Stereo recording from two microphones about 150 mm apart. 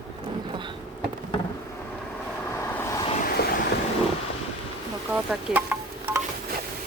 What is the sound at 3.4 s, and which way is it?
Vehicle, 90° left.